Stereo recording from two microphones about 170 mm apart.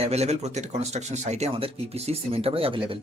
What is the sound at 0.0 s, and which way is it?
Speech, 40° right (ahead or behind).